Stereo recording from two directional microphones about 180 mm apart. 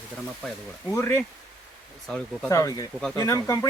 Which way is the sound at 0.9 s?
15° left (ahead or behind).